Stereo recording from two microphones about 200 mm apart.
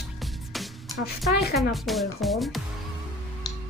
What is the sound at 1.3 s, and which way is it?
Speech, 50° left (ahead or behind).